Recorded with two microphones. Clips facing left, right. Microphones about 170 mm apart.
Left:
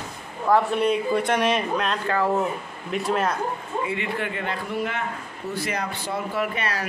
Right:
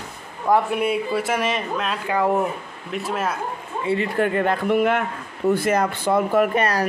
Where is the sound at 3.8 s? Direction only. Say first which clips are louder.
Right 10 dB; 35° right (ahead or behind).